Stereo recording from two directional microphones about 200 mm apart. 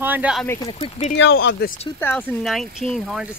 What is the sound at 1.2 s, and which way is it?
Speech, 65° left (ahead or behind).